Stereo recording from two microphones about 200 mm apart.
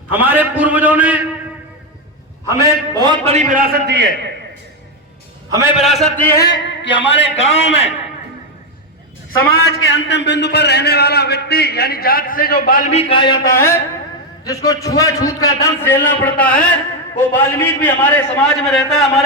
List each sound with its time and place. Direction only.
0.1 s a sound: 10° right (ahead or behind)
2.5 s a man's voice: 15° right (ahead or behind)
3.3 s a man's voice: 45° right (ahead or behind)
5.5 s a man's voice: 15° right (ahead or behind)
5.7 s a man's voice: centre (ahead or behind)
6.1 s a man's voice: 10° left (ahead or behind)
6.4 s a man's voice: 60° left (ahead or behind)
9.4 s a man's voice: 90° left; by 19.1 s centre (ahead or behind)